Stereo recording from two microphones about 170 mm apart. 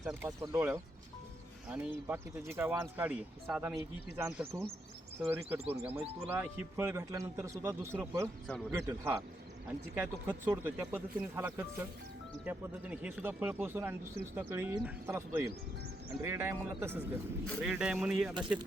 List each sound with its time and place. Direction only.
0.2 s speech: 15° right (ahead or behind)
4.2 s speech: 15° right (ahead or behind)